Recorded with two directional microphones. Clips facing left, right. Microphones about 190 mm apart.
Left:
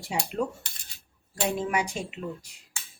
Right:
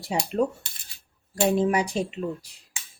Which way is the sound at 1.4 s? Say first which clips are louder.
Right 6 dB; 35° right (ahead or behind).